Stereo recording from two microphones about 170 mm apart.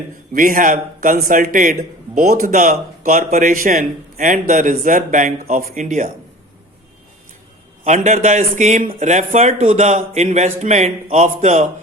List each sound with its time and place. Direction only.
0.3 s speech: 55° right (ahead or behind)
7.9 s speech: 45° right (ahead or behind)